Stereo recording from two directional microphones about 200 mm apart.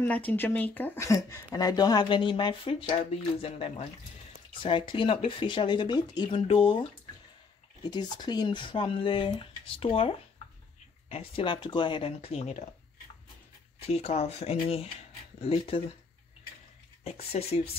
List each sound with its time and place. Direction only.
0.0 s speech: 10° left (ahead or behind); by 12.6 s 30° left (ahead or behind)
13.7 s speech: 30° left (ahead or behind)
17.0 s speech: 30° left (ahead or behind)